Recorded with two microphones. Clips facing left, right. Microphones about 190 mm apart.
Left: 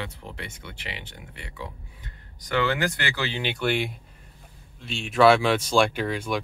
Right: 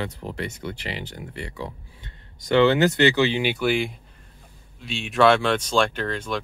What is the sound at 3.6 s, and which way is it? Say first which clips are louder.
Speech: right 3 dB; centre (ahead or behind).